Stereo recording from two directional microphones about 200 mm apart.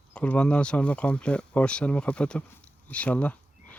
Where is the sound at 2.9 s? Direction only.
5° left (ahead or behind).